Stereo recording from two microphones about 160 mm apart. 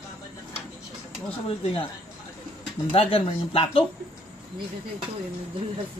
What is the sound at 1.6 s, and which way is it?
Speech, 40° left (ahead or behind).